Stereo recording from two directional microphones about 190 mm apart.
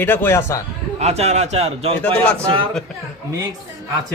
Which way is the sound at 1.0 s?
35° right (ahead or behind).